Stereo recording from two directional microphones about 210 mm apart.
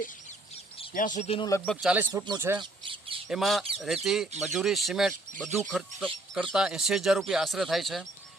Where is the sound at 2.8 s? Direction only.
25° right (ahead or behind).